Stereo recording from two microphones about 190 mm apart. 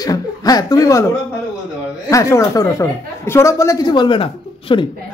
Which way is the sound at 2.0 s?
15° left (ahead or behind).